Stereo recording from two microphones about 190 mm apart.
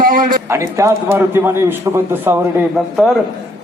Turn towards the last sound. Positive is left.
turn(degrees=0)  # may be behind; listen again after turning